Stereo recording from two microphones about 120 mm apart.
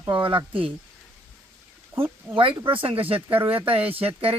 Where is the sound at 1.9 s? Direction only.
20° right (ahead or behind).